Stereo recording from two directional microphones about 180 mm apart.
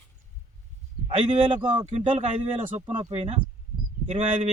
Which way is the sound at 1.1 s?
35° right (ahead or behind).